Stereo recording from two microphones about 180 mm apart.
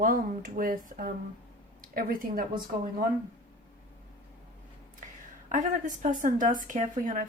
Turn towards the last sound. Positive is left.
turn(degrees=-50)  # may be behind; listen again after turning